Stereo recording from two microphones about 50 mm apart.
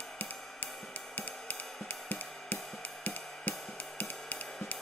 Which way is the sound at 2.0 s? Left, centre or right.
Left.